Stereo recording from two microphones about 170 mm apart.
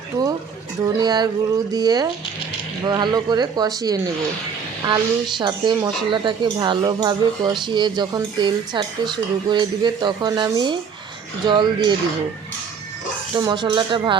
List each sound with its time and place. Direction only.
0.8 s speech: 25° right (ahead or behind)
13.3 s speech: 25° right (ahead or behind)